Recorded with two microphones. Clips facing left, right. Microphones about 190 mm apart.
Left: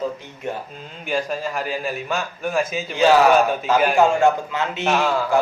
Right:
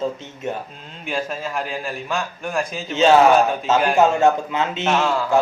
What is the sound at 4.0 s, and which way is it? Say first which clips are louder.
Speech: right 2 dB; 20° right (ahead or behind).